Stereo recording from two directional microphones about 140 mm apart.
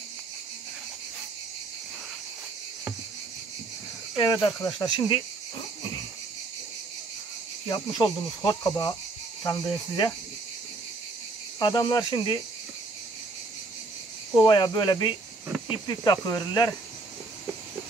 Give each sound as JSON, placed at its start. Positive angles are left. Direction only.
{"t": 4.2, "sound": "speech", "side_deg": 30}
{"t": 4.6, "sound": "cricket", "side_deg": 30}
{"t": 7.6, "sound": "speech", "side_deg": 30}
{"t": 11.6, "sound": "cricket", "side_deg": 30}
{"t": 14.3, "sound": "speech", "side_deg": 30}